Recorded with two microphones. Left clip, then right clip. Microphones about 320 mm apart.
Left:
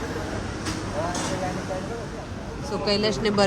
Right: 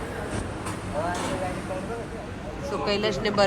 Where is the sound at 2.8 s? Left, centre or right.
Centre.